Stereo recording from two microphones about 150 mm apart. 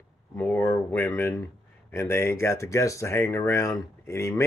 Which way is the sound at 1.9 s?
15° left (ahead or behind).